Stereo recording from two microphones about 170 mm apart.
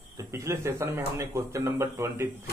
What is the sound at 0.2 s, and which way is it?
Speech, 20° right (ahead or behind).